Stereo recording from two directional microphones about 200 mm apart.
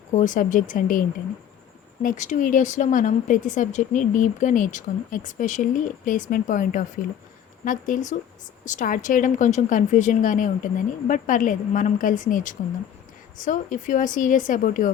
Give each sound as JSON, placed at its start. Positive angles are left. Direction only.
{"t": 0.1, "sound": "speech", "side_deg": 40}